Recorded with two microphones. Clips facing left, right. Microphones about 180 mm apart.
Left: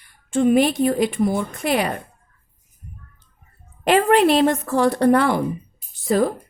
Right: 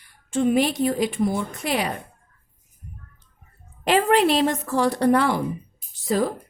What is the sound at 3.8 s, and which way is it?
A woman's voice, 55° left (ahead or behind).